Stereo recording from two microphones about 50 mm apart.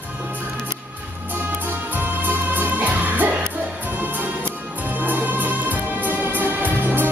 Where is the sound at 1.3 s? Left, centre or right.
Right.